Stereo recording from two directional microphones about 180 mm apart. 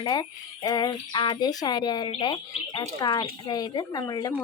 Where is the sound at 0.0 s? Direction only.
25° left (ahead or behind).